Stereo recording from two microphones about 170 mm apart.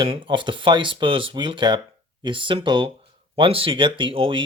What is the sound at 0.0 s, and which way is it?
Speech, 30° right (ahead or behind).